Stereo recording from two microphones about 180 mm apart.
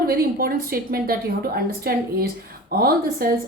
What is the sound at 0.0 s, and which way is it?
A woman's voice, 55° right (ahead or behind).